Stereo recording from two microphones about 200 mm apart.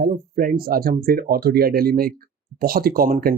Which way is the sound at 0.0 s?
45° right (ahead or behind).